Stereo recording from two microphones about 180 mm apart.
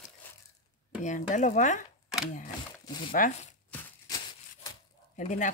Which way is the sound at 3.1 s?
45° left (ahead or behind).